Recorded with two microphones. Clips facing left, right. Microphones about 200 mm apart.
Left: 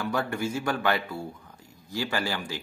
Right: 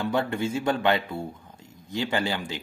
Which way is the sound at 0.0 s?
25° right (ahead or behind).